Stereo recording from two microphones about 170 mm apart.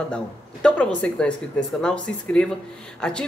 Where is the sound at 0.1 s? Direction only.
5° left (ahead or behind).